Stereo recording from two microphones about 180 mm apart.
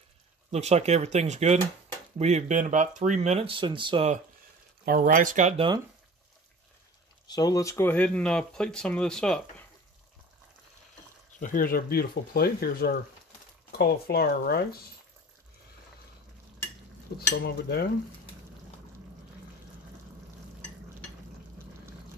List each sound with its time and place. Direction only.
0.5 s speech: 35° right (ahead or behind)
4.8 s speech: 55° right (ahead or behind)
7.2 s speech: 20° left (ahead or behind); by 9.7 s 5° left (ahead or behind)
11.3 s speech: 50° left (ahead or behind)
17.3 s speech: 60° left (ahead or behind)